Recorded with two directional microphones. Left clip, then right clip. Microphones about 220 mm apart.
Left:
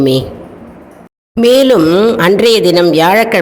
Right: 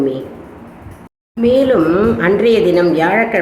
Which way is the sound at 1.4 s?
50° left (ahead or behind).